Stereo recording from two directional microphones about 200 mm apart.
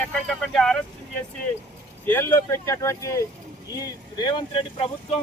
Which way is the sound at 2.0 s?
10° left (ahead or behind).